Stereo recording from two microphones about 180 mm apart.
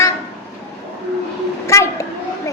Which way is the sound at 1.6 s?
15° left (ahead or behind).